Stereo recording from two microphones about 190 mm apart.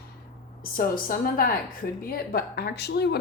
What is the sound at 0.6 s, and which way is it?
A woman's voice, 45° left (ahead or behind).